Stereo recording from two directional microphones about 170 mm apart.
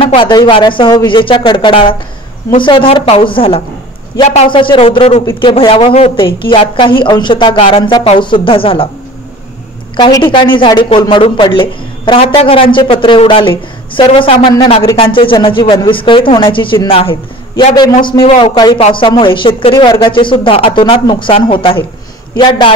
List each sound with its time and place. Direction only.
0.0 s a woman's voice: 30° left (ahead or behind)
9.9 s a woman's voice: 25° left (ahead or behind)